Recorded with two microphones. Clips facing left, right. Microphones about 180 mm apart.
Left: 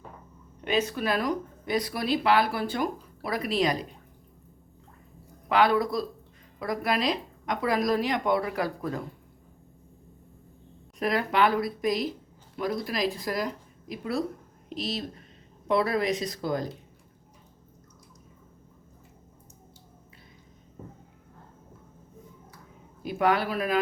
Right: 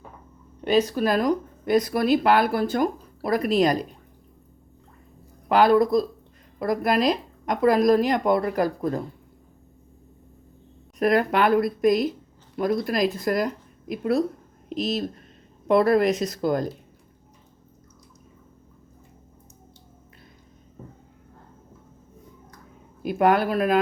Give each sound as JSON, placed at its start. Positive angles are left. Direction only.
{"t": 0.6, "sound": "speech", "side_deg": -35}
{"t": 5.5, "sound": "a woman's voice", "side_deg": -45}
{"t": 11.0, "sound": "speech", "side_deg": -50}
{"t": 15.6, "sound": "speech", "side_deg": -50}
{"t": 23.0, "sound": "speech", "side_deg": -50}